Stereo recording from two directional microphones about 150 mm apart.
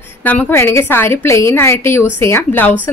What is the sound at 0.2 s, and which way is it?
A woman's voice, 10° left (ahead or behind).